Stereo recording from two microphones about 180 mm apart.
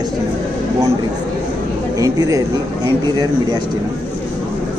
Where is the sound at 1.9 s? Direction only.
20° right (ahead or behind).